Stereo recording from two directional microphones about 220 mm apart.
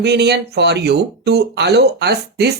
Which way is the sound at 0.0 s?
50° right (ahead or behind).